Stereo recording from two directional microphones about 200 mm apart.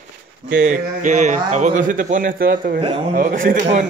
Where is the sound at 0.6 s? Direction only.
40° right (ahead or behind).